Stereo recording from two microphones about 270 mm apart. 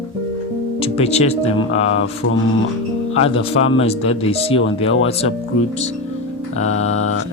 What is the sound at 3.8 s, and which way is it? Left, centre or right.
Speech, left.